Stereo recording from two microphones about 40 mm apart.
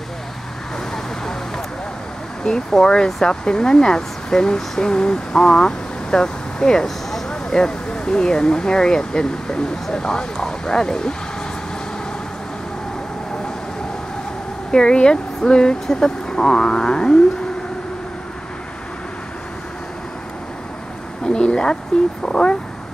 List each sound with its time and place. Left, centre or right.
2.4 s speech: centre
14.7 s speech: left
21.2 s a sound: left
22.2 s speech: left